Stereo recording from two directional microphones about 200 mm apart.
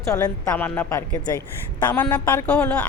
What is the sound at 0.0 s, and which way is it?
Speech, 15° left (ahead or behind).